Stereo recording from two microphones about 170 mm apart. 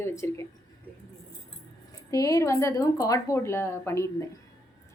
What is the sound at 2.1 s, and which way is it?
A woman's voice, 20° left (ahead or behind).